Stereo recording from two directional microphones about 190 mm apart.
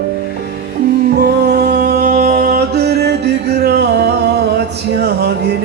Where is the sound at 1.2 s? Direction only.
60° right (ahead or behind).